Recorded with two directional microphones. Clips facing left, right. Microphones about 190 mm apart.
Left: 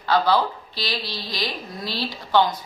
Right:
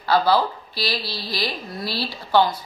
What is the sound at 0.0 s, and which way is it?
A woman's voice, 10° right (ahead or behind).